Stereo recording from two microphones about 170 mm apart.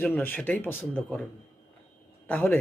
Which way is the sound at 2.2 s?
10° left (ahead or behind).